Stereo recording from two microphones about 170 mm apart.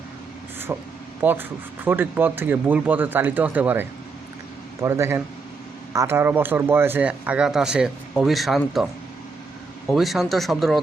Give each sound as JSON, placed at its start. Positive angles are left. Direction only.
{"t": 0.7, "sound": "speech", "side_deg": -10}
{"t": 9.9, "sound": "speech", "side_deg": 0}